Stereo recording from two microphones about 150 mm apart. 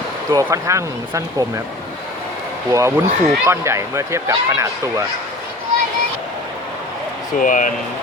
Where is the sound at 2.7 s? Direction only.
20° right (ahead or behind).